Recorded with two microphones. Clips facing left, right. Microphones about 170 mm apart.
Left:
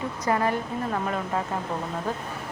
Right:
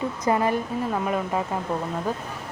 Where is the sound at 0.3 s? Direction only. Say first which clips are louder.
Right 2 dB; 20° right (ahead or behind).